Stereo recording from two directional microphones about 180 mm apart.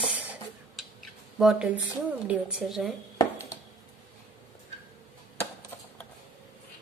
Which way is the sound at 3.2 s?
20° left (ahead or behind).